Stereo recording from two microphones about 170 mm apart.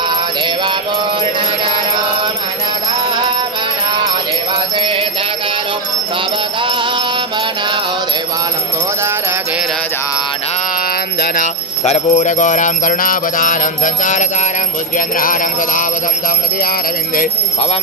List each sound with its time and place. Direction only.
11.8 s mantra: 45° left (ahead or behind)
15.0 s mantra: 55° left (ahead or behind)